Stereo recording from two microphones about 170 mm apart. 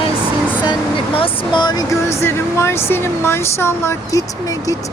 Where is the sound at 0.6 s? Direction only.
30° left (ahead or behind).